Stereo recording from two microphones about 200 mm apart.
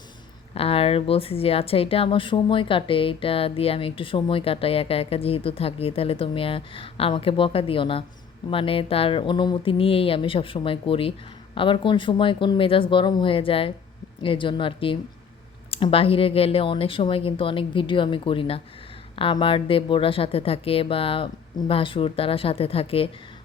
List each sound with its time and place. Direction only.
0.5 s speech: 30° left (ahead or behind)